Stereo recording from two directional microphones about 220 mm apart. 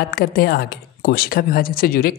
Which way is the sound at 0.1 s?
45° left (ahead or behind).